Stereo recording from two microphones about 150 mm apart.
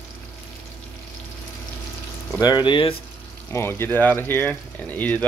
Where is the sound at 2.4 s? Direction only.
30° left (ahead or behind).